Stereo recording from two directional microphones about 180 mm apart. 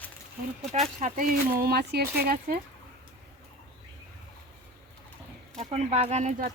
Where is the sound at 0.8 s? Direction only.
40° right (ahead or behind).